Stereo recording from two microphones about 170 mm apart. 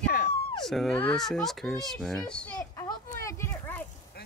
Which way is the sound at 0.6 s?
Centre (ahead or behind).